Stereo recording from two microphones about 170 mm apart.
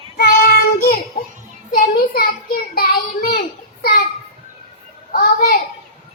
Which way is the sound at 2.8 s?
60° left (ahead or behind).